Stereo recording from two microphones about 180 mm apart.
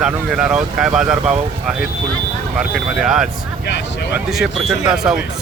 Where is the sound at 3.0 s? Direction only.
5° right (ahead or behind).